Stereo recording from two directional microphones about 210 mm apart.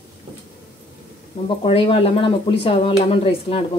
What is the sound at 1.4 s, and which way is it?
Speech, 25° left (ahead or behind).